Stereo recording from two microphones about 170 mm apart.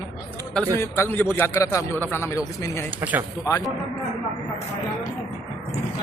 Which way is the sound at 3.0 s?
10° right (ahead or behind).